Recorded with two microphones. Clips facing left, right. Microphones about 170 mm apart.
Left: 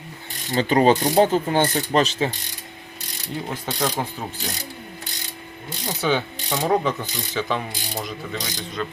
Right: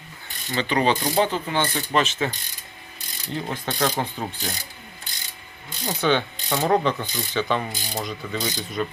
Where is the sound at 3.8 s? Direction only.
Centre (ahead or behind).